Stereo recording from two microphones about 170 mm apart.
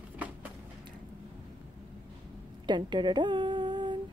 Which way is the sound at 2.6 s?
25° right (ahead or behind).